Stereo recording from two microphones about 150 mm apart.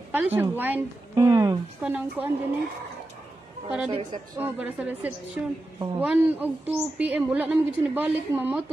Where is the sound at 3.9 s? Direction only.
35° right (ahead or behind).